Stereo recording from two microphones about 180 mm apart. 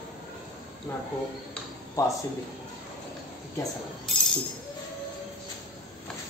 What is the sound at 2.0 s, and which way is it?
Speech, 15° left (ahead or behind).